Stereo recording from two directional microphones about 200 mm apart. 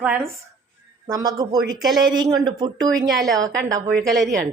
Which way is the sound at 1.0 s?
20° right (ahead or behind).